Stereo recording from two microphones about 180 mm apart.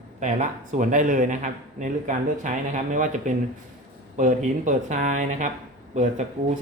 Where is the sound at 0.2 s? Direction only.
40° right (ahead or behind).